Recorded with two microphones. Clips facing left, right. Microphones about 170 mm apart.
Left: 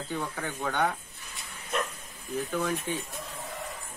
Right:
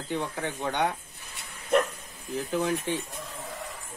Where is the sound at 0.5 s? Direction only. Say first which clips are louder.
Right 1 dB; 25° right (ahead or behind).